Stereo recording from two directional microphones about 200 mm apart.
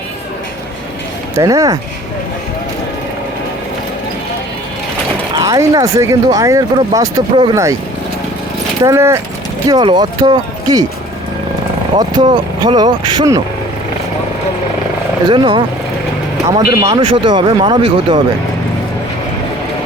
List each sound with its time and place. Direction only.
1.4 s speech: 15° right (ahead or behind)
5.3 s speech: 15° right (ahead or behind)
8.8 s speech: 15° right (ahead or behind)
11.9 s speech: 20° right (ahead or behind)
15.3 s speech: 25° right (ahead or behind)
16.8 s speech: 30° right (ahead or behind)